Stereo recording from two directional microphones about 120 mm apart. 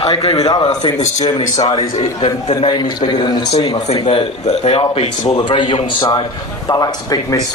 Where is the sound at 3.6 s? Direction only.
55° left (ahead or behind).